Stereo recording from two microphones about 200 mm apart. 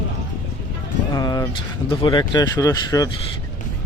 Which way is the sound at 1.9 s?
25° left (ahead or behind).